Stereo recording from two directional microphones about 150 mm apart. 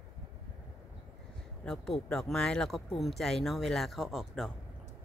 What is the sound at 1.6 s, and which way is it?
Speech, 5° left (ahead or behind).